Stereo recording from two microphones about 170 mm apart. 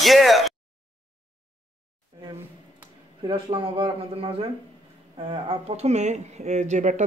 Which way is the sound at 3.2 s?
30° right (ahead or behind).